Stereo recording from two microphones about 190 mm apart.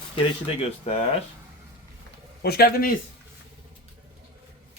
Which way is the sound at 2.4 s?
55° left (ahead or behind).